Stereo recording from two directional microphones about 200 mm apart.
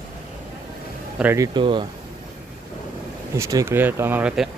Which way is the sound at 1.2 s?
10° right (ahead or behind).